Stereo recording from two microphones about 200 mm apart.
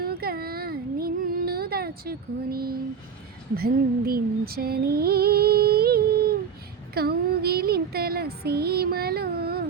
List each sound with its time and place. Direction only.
0.0 s child singing: 50° right (ahead or behind)
3.5 s music: 50° right (ahead or behind)